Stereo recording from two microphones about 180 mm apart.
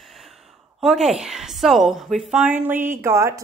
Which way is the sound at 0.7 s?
Centre (ahead or behind).